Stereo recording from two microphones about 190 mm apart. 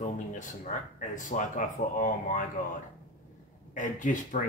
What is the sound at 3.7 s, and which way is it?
Speech, 40° left (ahead or behind).